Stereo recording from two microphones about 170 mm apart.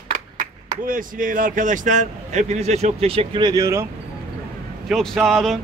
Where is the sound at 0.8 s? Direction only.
55° right (ahead or behind); by 3.8 s 20° right (ahead or behind).